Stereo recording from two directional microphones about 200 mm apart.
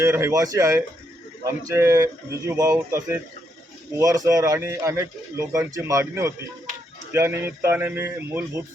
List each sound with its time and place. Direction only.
0.0 s speech: 15° right (ahead or behind)